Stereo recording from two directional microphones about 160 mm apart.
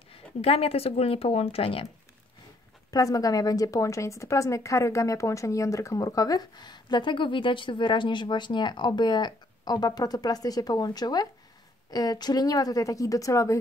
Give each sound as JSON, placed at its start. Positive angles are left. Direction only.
{"t": 0.1, "sound": "speech", "side_deg": 35}
{"t": 2.9, "sound": "speech", "side_deg": 20}